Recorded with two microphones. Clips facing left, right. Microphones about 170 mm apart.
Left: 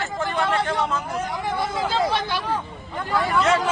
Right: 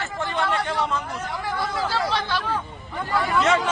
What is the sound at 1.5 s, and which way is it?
Speech, 20° left (ahead or behind).